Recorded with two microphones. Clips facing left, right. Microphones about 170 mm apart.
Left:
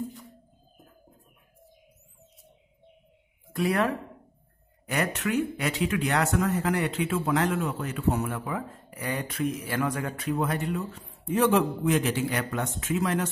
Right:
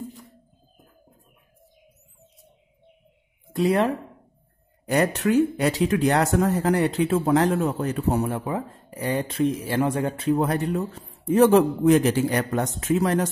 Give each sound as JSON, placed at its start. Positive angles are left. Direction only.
{"t": 3.5, "sound": "speech", "side_deg": -25}